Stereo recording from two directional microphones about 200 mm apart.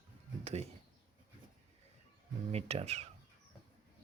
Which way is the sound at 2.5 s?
30° right (ahead or behind).